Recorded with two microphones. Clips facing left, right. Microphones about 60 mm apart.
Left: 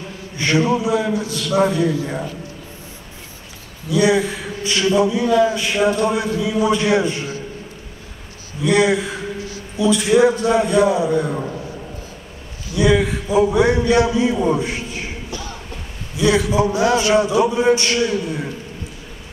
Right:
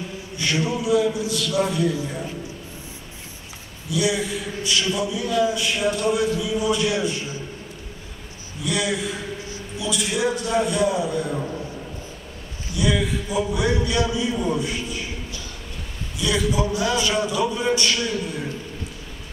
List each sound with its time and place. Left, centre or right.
0.4 s a man's voice: left
3.9 s a man's voice: left
8.6 s a man's voice: left
12.7 s a man's voice: left
17.4 s a man's voice: left